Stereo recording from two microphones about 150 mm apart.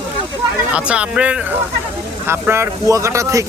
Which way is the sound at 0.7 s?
5° right (ahead or behind).